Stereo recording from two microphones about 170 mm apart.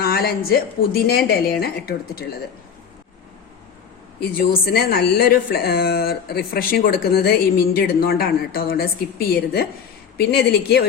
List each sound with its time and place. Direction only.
0.0 s a woman's voice: 65° left (ahead or behind)
4.2 s a woman's voice: 65° left (ahead or behind)